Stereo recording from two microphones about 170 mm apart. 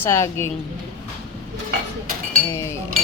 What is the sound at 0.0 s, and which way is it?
Speech, 15° left (ahead or behind).